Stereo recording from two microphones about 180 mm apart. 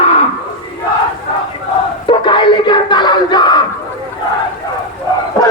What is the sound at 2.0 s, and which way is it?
Crowd, 25° left (ahead or behind).